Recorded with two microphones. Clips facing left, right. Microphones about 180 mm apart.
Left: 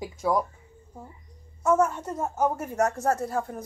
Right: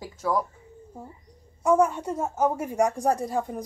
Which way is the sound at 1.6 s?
15° right (ahead or behind).